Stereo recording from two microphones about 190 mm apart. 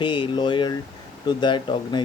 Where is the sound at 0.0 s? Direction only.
25° left (ahead or behind).